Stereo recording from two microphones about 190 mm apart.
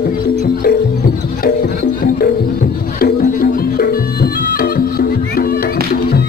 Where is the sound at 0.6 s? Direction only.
55° left (ahead or behind).